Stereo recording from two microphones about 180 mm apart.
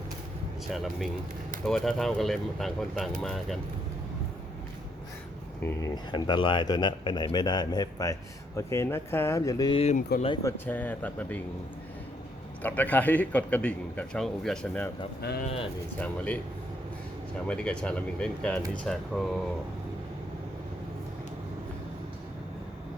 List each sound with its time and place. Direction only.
0.7 s speech: centre (ahead or behind)
5.6 s speech: 20° left (ahead or behind)
9.7 s speech: 35° left (ahead or behind)
10.4 s a man's voice: 10° left (ahead or behind)
12.6 s a man's voice: 10° left (ahead or behind)
15.4 s speech: 30° left (ahead or behind)
16.0 s a man's voice: 10° left (ahead or behind)
17.4 s a man's voice: 5° left (ahead or behind)